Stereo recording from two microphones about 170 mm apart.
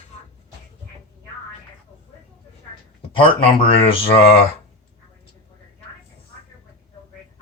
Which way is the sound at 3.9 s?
30° left (ahead or behind).